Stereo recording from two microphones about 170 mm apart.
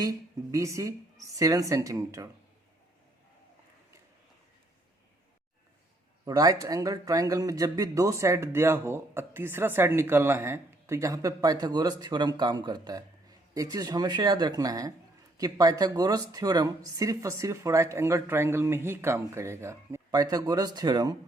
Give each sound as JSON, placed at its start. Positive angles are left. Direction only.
{"t": 0.0, "sound": "a man's voice", "side_deg": -20}
{"t": 6.2, "sound": "a man's voice", "side_deg": -20}